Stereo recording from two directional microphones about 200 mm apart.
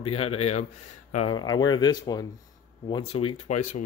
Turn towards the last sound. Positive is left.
turn(degrees=40)  # may be behind; listen again after turning